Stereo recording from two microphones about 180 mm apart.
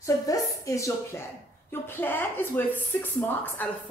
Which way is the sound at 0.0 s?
20° left (ahead or behind).